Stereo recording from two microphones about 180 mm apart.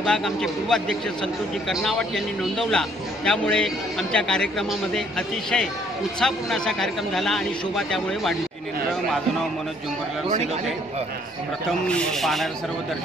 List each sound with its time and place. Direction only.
0.0 s a man's voice: 5° left (ahead or behind)
10.3 s a man's voice: 35° right (ahead or behind)
11.9 s a man's voice: centre (ahead or behind)